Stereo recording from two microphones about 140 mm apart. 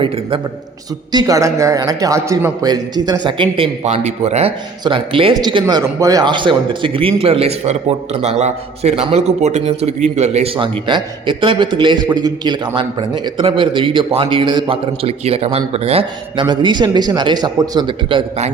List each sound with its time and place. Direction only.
1.1 s a man's voice: 25° right (ahead or behind)
3.8 s a man's voice: 50° right (ahead or behind)
4.8 s a man's voice: 35° right (ahead or behind)